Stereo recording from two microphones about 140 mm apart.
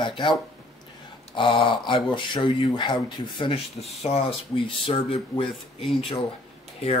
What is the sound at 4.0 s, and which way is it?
Speech, 45° left (ahead or behind).